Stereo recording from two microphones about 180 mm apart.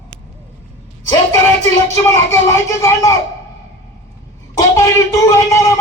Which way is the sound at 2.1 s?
15° left (ahead or behind).